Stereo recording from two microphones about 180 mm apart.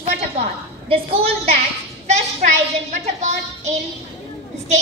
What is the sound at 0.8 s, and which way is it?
Speech, 30° right (ahead or behind).